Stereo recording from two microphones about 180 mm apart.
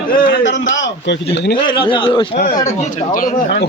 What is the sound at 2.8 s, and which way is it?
Speech, 45° left (ahead or behind).